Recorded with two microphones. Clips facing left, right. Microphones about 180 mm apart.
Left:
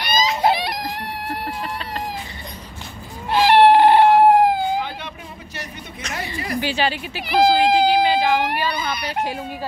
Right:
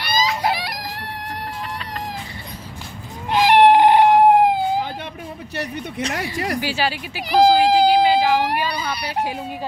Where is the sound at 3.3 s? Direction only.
15° right (ahead or behind).